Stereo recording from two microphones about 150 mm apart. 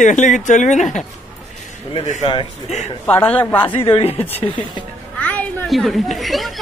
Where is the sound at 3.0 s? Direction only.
10° left (ahead or behind).